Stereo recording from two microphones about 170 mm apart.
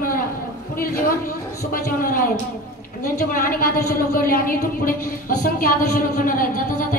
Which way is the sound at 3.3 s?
55° left (ahead or behind).